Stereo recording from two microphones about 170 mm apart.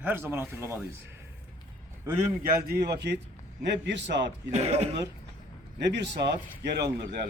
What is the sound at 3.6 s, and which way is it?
Speech, 90° right.